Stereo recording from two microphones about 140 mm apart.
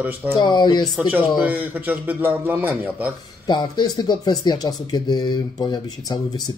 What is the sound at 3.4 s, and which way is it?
Speech, 30° left (ahead or behind).